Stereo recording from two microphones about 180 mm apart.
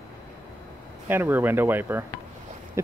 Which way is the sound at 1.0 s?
10° right (ahead or behind).